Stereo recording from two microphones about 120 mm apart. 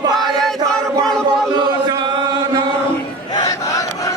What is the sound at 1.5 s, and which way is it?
Chant, 40° right (ahead or behind).